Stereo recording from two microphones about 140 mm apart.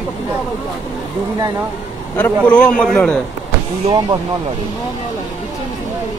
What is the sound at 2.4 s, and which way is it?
Speech, 10° left (ahead or behind).